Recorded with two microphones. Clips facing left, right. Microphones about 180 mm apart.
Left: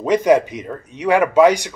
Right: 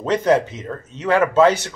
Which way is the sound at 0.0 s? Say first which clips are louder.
Left 3 dB; 10° left (ahead or behind).